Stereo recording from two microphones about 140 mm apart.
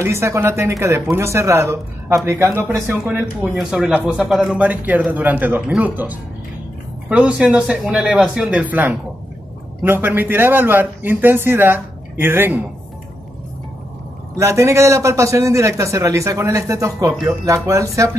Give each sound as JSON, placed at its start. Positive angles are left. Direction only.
{"t": 0.0, "sound": "a man's voice", "side_deg": -20}
{"t": 2.7, "sound": "a man's voice", "side_deg": -5}
{"t": 14.3, "sound": "a man's voice", "side_deg": -20}